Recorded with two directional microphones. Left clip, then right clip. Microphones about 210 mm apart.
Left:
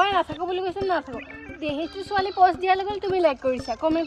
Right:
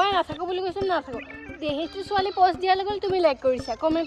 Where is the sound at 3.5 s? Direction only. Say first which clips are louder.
Right 1 dB; centre (ahead or behind).